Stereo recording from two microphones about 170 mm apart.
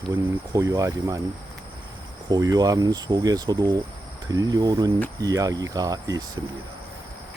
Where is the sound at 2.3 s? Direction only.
25° right (ahead or behind).